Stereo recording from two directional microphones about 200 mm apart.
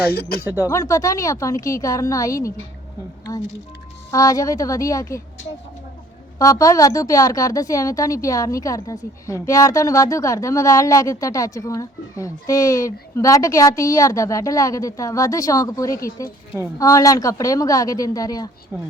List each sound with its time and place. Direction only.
0.0 s speech: 50° left (ahead or behind)
0.6 s a woman's voice: 15° left (ahead or behind)
4.1 s a woman's voice: 15° left (ahead or behind)
6.4 s a woman's voice: 15° left (ahead or behind)